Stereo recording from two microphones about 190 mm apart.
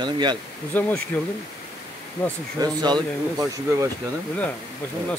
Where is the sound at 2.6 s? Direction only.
20° right (ahead or behind).